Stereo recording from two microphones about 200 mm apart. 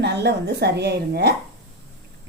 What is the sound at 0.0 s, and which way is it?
A woman's voice, 55° right (ahead or behind).